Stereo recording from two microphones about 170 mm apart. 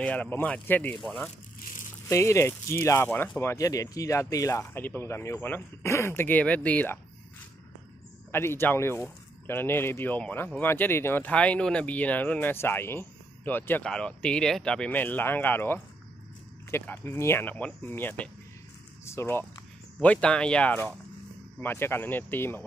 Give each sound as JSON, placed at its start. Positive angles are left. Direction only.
{"t": 0.0, "sound": "speech", "side_deg": 10}
{"t": 2.0, "sound": "speech", "side_deg": 15}
{"t": 8.3, "sound": "speech", "side_deg": 15}